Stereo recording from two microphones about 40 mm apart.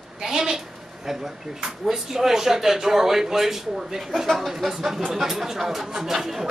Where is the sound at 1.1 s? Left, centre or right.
Centre.